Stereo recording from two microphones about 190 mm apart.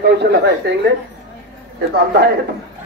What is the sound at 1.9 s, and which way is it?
Speech, 60° right (ahead or behind).